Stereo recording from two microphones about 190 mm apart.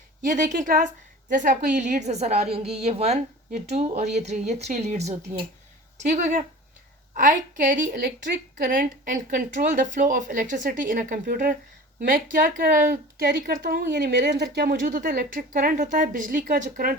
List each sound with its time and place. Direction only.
0.3 s a woman's voice: 40° right (ahead or behind)
6.1 s a woman's voice: 40° right (ahead or behind)